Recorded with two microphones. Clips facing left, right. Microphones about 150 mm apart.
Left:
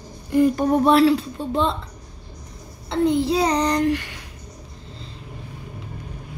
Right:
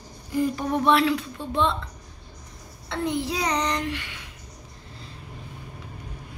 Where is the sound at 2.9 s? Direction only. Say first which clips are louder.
Left 8 dB; 30° left (ahead or behind).